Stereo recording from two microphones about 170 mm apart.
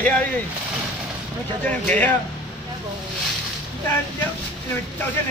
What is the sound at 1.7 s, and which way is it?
Speech, 10° left (ahead or behind).